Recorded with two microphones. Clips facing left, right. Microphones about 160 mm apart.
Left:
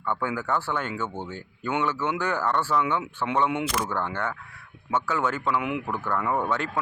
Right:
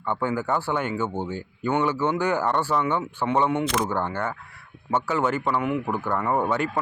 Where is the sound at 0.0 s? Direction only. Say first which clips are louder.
Right 3 dB; 15° right (ahead or behind).